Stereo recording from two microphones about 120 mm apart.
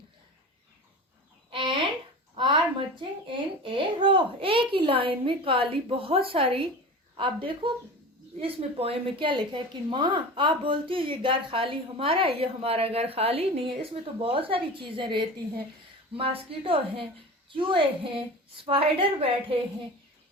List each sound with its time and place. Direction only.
1.5 s a sound: 45° right (ahead or behind)
2.3 s a woman's voice: 45° right (ahead or behind)
16.1 s speech: 50° right (ahead or behind)